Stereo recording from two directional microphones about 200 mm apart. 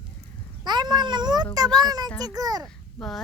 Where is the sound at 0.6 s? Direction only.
20° right (ahead or behind).